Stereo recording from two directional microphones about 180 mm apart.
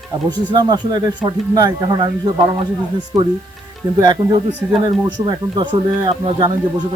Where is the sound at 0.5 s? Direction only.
25° right (ahead or behind).